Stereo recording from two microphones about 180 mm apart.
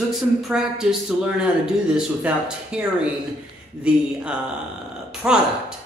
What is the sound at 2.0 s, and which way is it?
A man's voice, 5° right (ahead or behind).